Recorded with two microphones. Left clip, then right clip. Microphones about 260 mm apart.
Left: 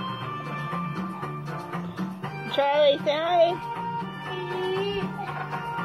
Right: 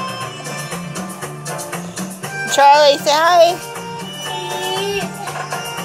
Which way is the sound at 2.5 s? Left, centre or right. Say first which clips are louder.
Right 11 dB; right.